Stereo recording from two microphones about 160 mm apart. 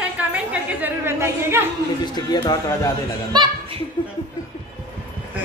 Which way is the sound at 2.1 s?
25° left (ahead or behind).